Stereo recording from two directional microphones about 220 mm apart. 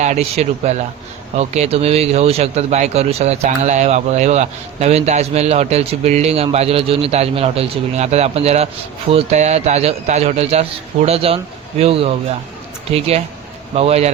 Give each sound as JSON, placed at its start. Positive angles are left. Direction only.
{"t": 0.0, "sound": "speech", "side_deg": -30}